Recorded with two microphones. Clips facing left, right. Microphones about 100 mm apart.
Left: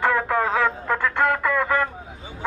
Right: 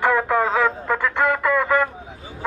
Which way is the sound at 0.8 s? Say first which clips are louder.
Right 1 dB; 5° right (ahead or behind).